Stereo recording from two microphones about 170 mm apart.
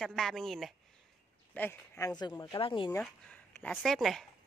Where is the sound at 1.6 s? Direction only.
15° left (ahead or behind).